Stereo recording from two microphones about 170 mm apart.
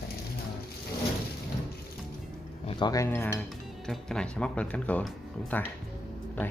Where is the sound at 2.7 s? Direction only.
25° left (ahead or behind).